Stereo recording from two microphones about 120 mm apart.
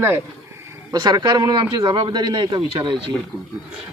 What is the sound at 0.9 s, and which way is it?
A man's voice, 35° right (ahead or behind).